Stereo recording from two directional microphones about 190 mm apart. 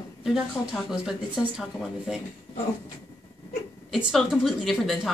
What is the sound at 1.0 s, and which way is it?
Speech, 5° right (ahead or behind).